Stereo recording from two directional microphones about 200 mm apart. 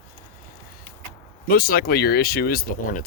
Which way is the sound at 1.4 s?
45° left (ahead or behind).